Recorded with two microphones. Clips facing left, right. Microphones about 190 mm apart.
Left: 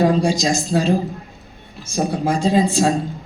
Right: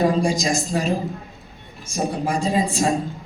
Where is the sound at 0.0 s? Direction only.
75° left (ahead or behind).